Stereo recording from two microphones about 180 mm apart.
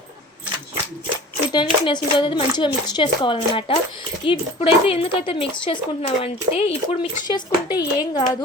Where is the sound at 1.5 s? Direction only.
25° left (ahead or behind).